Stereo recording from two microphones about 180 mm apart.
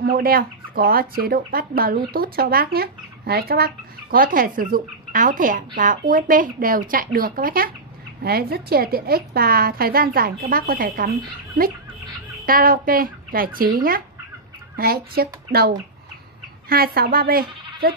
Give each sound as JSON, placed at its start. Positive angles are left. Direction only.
{"t": 0.0, "sound": "a woman's voice", "side_deg": -55}
{"t": 12.4, "sound": "a woman's voice", "side_deg": -50}